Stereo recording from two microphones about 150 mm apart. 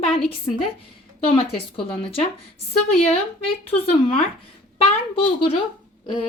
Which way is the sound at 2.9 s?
50° left (ahead or behind).